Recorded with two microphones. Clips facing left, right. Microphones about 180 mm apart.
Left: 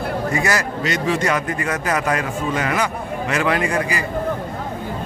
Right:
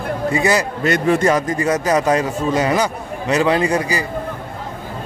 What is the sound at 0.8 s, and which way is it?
Speech, 55° right (ahead or behind).